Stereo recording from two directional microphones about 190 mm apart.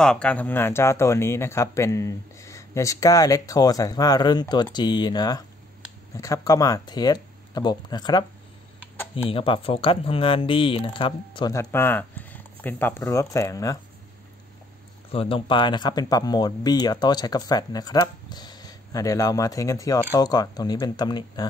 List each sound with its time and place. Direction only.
0.0 s speech: 5° left (ahead or behind)
15.1 s speech: 30° left (ahead or behind)